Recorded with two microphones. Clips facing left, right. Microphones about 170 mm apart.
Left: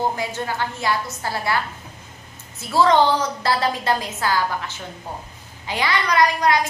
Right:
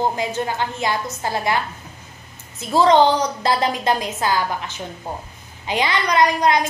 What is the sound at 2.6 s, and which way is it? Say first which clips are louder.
A woman's voice: right 2 dB; 20° right (ahead or behind).